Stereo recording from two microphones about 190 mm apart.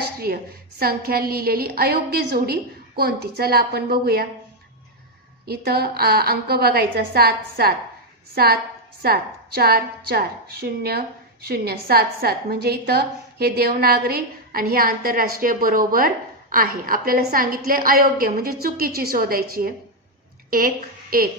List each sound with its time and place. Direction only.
0.2 s a woman's voice: 55° right (ahead or behind)
5.5 s a woman's voice: 55° right (ahead or behind)